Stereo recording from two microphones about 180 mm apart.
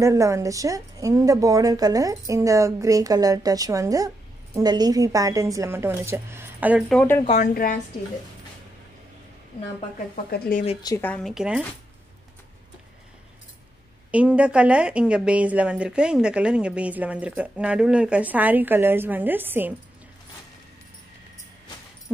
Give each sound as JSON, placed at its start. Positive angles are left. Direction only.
{"t": 0.0, "sound": "a woman's voice", "side_deg": -15}
{"t": 6.9, "sound": "speech", "side_deg": 5}
{"t": 7.5, "sound": "speech", "side_deg": 50}
{"t": 10.1, "sound": "speech", "side_deg": 50}
{"t": 11.0, "sound": "speech", "side_deg": 5}
{"t": 14.1, "sound": "a woman's voice", "side_deg": -5}